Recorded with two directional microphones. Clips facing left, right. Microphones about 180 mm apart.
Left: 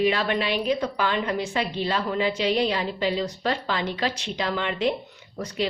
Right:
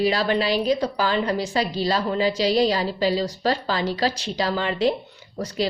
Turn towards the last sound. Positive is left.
turn(degrees=-40)  # may be behind; listen again after turning